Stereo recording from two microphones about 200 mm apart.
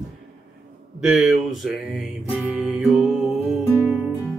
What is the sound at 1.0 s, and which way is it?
Music, 5° right (ahead or behind).